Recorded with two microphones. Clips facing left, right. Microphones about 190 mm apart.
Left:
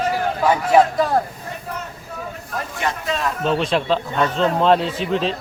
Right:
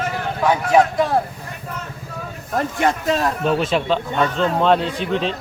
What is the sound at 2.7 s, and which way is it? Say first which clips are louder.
Speech: right 4 dB; 45° right (ahead or behind).